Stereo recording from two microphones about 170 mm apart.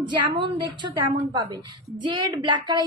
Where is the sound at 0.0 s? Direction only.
25° right (ahead or behind).